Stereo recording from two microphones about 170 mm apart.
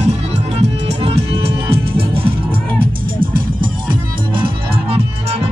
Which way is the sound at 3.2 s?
55° right (ahead or behind).